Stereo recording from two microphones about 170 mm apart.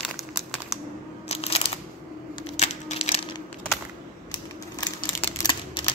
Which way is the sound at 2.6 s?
40° left (ahead or behind).